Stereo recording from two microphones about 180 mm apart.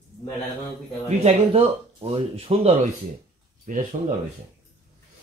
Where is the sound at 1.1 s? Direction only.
35° right (ahead or behind).